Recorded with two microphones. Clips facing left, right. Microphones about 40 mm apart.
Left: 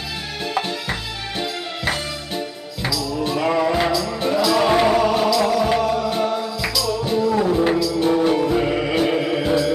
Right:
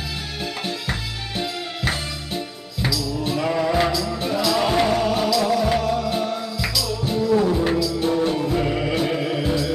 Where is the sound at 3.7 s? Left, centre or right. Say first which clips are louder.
Left 1 dB; centre.